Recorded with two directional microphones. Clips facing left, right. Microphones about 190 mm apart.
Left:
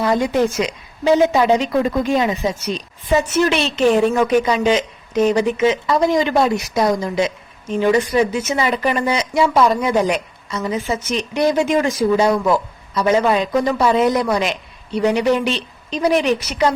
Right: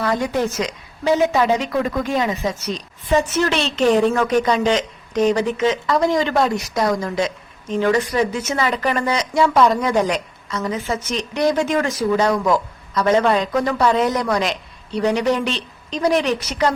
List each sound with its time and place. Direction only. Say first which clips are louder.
0.0 s a woman's voice: left 3 dB; 15° left (ahead or behind)
3.1 s a woman's voice: left 2 dB; 10° left (ahead or behind)